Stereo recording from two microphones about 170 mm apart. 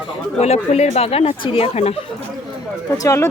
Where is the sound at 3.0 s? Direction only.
15° left (ahead or behind).